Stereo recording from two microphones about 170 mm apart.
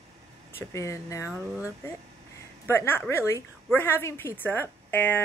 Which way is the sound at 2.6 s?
15° left (ahead or behind).